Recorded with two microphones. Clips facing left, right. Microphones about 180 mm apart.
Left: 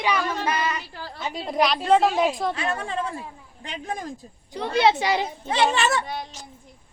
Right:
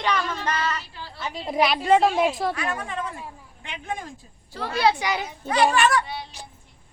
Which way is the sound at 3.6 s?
35° left (ahead or behind).